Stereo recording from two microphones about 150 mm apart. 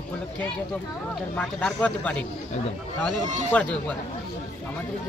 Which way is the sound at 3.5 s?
10° left (ahead or behind).